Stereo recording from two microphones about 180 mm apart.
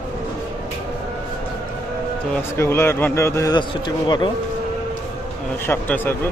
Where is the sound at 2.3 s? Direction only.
15° left (ahead or behind).